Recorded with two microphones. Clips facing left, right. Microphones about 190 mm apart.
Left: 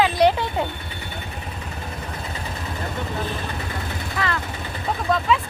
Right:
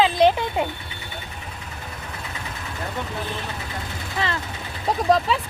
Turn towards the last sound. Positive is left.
turn(degrees=-35)  # may be behind; listen again after turning